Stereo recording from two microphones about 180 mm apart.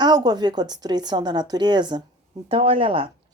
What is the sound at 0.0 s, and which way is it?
Speech, 25° right (ahead or behind).